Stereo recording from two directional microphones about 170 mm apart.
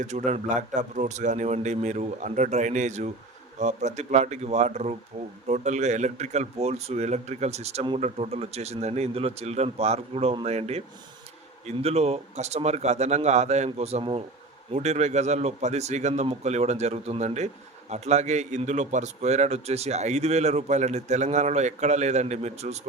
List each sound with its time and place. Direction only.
0.0 s a man's voice: 45° right (ahead or behind)